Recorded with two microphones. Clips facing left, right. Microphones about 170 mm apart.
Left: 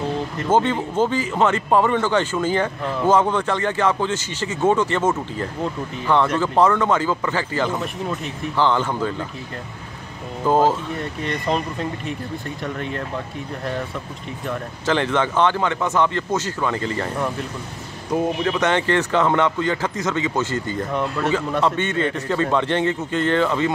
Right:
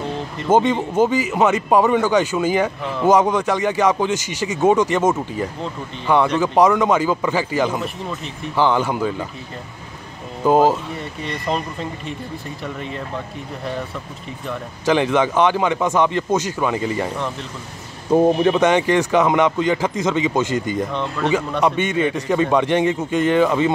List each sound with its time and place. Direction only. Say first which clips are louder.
0.5 s a man's voice: right 3 dB; 15° right (ahead or behind)
10.4 s a man's voice: right 3 dB; 15° right (ahead or behind)
11.0 s speech: left 2 dB; centre (ahead or behind)
14.9 s a man's voice: right 4 dB; 15° right (ahead or behind)
18.1 s speech: right 7 dB; 30° right (ahead or behind)
18.6 s a man's voice: right 4 dB; 15° right (ahead or behind)
20.9 s speech: even; 5° left (ahead or behind)
21.6 s a man's voice: right 2 dB; 15° right (ahead or behind)